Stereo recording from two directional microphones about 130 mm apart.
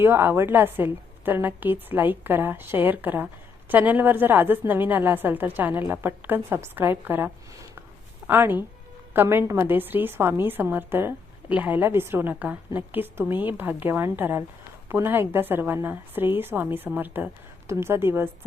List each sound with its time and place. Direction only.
0.0 s a woman's voice: 15° right (ahead or behind)
8.3 s a woman's voice: 15° right (ahead or behind)